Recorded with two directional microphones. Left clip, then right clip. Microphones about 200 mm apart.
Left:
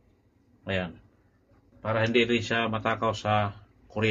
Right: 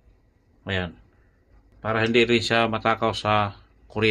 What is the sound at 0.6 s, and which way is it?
Speech, 65° right (ahead or behind).